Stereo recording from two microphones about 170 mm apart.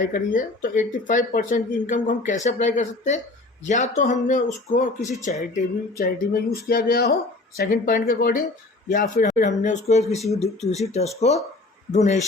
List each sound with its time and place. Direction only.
0.1 s speech: 50° left (ahead or behind)
6.0 s speech: 60° left (ahead or behind); by 12.2 s 40° left (ahead or behind)